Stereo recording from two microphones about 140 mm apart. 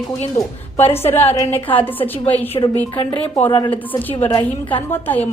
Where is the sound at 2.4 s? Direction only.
35° left (ahead or behind).